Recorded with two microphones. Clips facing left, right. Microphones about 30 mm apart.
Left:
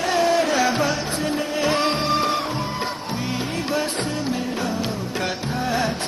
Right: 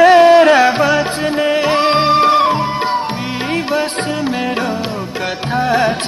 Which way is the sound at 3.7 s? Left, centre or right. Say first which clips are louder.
Right 7 dB; right.